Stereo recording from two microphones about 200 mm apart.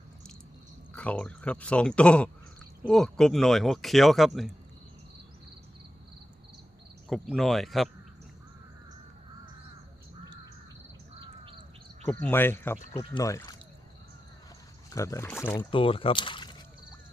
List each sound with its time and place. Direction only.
0.9 s speech: 5° left (ahead or behind)
7.1 s speech: centre (ahead or behind)
12.2 s speech: 10° left (ahead or behind)
14.8 s speech: 15° left (ahead or behind)
15.7 s speech: 25° left (ahead or behind)